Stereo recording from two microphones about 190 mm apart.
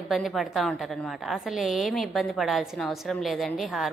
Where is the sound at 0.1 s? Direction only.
Centre (ahead or behind).